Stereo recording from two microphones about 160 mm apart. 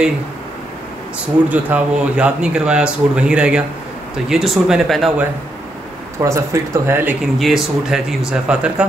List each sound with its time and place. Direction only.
1.5 s speech: 10° right (ahead or behind)
6.1 s speech: 15° right (ahead or behind)
7.3 s speech: centre (ahead or behind)